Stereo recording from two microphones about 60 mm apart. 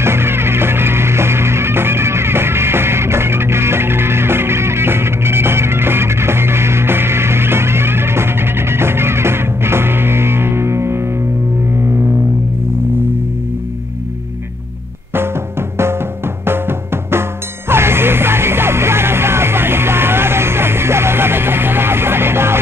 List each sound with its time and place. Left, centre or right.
0.0 s music: right
16.4 s music: right